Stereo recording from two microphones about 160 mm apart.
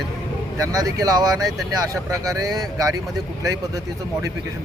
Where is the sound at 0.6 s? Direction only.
20° right (ahead or behind).